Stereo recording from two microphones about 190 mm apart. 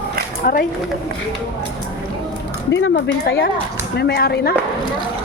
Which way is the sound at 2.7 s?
75° left (ahead or behind).